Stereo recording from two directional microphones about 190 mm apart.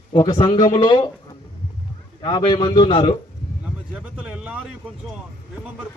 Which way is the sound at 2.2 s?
25° left (ahead or behind).